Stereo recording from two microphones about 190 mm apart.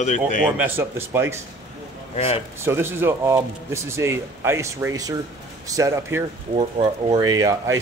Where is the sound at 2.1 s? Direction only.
30° left (ahead or behind).